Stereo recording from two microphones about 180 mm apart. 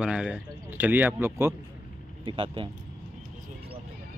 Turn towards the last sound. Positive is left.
turn(degrees=-30)  # may be behind; listen again after turning